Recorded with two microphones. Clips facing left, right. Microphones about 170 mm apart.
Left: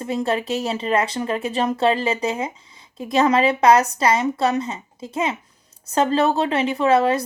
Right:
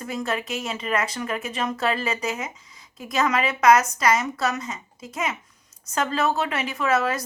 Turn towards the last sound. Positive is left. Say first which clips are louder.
# left 6 dB
turn(degrees=30)  # may be behind; listen again after turning